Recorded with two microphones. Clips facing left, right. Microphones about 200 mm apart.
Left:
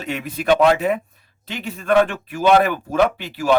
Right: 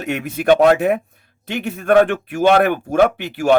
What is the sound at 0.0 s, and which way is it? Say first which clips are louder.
Speech: right 4 dB; 55° right (ahead or behind).